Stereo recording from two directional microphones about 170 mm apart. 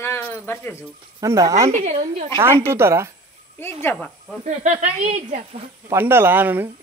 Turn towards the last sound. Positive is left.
turn(degrees=-10)  # may be behind; listen again after turning